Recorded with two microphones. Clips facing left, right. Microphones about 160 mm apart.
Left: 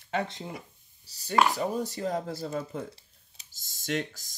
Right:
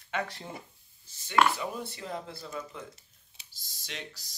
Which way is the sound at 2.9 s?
40° left (ahead or behind).